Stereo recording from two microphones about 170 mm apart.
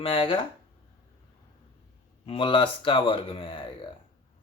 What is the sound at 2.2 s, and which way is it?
Speech, 30° left (ahead or behind).